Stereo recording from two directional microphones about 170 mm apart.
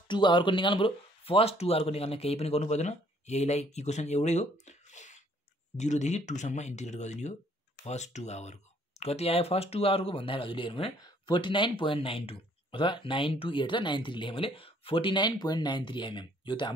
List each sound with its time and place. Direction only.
0.1 s speech: 30° left (ahead or behind)